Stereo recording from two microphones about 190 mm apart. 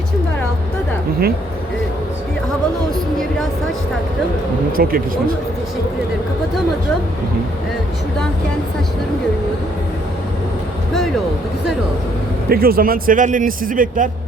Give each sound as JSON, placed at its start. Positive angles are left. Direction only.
{"t": 4.8, "sound": "a man's voice", "side_deg": -50}
{"t": 12.5, "sound": "a man's voice", "side_deg": -50}